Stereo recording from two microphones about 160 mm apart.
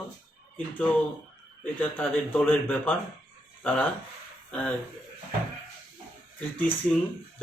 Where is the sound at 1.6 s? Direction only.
10° left (ahead or behind).